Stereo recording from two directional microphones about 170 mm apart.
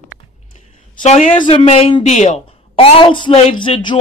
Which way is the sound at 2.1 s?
45° left (ahead or behind).